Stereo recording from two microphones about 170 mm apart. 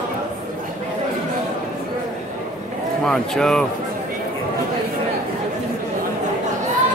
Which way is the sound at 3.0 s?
5° left (ahead or behind).